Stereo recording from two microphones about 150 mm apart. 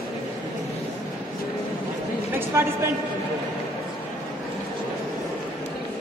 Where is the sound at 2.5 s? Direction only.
20° right (ahead or behind).